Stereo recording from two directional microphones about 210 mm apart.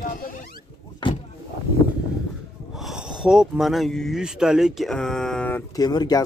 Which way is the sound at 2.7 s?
Centre (ahead or behind).